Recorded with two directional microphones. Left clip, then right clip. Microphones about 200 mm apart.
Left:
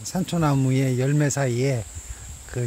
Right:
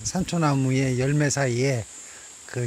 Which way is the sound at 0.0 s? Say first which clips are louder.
Even; 5° left (ahead or behind).